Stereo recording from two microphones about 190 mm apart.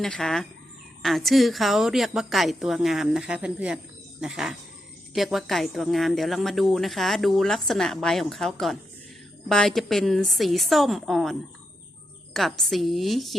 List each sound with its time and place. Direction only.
0.0 s speech: centre (ahead or behind)